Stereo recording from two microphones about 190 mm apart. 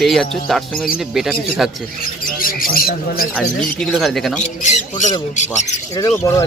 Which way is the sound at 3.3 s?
Centre (ahead or behind).